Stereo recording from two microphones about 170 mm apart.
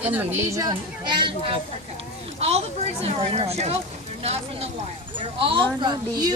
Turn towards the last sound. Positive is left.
turn(degrees=-25)  # may be behind; listen again after turning